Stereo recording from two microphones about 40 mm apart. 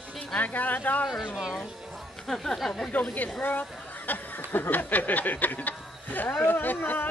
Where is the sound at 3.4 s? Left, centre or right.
Left.